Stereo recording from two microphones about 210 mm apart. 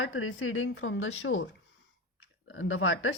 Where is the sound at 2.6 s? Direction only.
70° left (ahead or behind).